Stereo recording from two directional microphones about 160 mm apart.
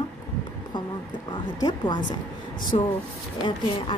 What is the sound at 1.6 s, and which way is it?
Speech, 25° left (ahead or behind).